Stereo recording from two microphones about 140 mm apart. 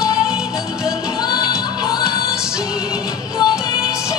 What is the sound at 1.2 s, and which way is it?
Music, 30° left (ahead or behind).